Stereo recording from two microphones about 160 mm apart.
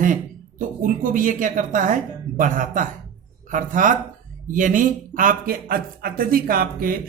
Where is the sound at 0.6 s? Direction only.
55° right (ahead or behind).